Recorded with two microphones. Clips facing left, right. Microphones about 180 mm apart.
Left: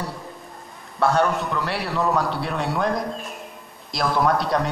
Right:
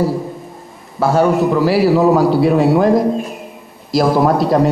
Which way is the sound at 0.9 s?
5° right (ahead or behind).